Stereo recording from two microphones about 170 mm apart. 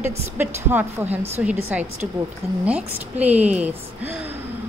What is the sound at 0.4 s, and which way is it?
A woman's voice, 10° right (ahead or behind).